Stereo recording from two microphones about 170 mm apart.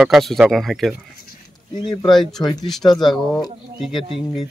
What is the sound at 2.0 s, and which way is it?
Speech, centre (ahead or behind).